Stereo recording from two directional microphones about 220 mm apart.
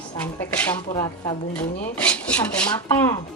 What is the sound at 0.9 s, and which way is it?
Speech, 20° left (ahead or behind).